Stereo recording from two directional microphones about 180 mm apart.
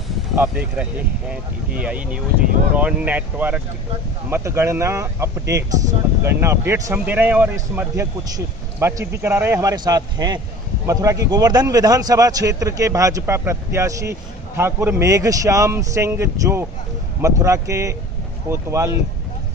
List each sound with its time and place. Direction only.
0.4 s a man's voice: 10° right (ahead or behind)